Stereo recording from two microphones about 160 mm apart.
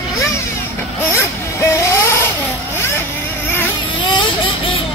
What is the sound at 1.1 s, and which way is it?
Vehicle, 15° left (ahead or behind).